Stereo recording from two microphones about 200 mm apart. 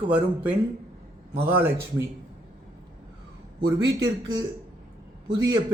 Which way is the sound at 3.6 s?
20° right (ahead or behind).